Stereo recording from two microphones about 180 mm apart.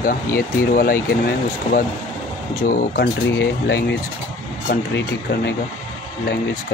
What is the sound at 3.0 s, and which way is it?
Speech, 65° left (ahead or behind).